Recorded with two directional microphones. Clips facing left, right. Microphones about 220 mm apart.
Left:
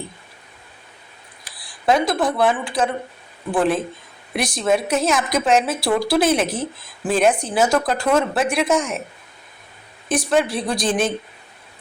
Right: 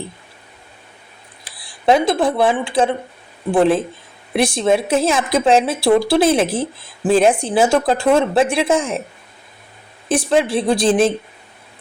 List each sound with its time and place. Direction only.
1.5 s a woman's voice: 25° right (ahead or behind)
10.1 s a woman's voice: 30° right (ahead or behind)